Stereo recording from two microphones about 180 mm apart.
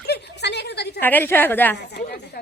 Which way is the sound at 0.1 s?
70° left (ahead or behind).